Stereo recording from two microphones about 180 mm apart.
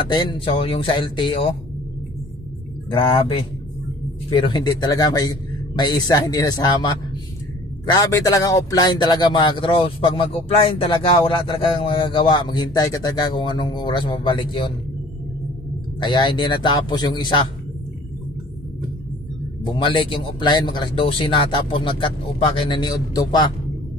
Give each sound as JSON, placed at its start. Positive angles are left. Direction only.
{"t": 0.1, "sound": "a man's voice", "side_deg": 25}
{"t": 2.9, "sound": "a man's voice", "side_deg": 25}
{"t": 16.0, "sound": "a man's voice", "side_deg": 25}
{"t": 19.6, "sound": "a man's voice", "side_deg": 30}